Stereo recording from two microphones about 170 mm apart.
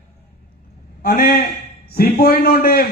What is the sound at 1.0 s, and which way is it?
A man's voice, 60° left (ahead or behind).